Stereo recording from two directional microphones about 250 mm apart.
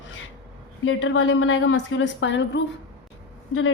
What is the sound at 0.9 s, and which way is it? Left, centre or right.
A woman's voice, left.